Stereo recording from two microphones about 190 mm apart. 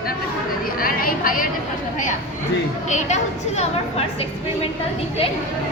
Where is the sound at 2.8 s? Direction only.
40° left (ahead or behind).